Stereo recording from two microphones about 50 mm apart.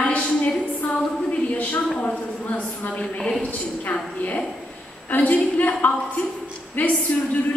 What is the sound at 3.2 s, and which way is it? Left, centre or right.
Speech, centre.